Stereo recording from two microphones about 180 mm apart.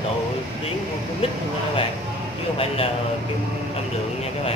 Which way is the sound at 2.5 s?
35° left (ahead or behind).